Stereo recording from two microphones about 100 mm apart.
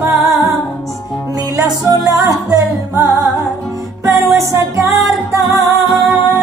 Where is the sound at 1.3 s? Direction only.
35° right (ahead or behind).